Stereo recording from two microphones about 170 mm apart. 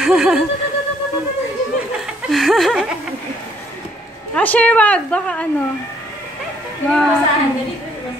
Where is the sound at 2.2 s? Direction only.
Centre (ahead or behind).